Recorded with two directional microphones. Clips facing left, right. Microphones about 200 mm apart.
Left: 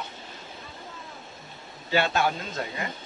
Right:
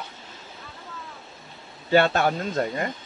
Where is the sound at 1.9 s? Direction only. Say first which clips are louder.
Right 5 dB; 55° right (ahead or behind).